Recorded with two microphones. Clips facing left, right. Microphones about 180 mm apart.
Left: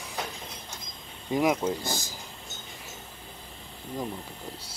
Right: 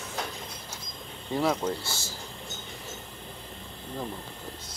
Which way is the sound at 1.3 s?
15° left (ahead or behind).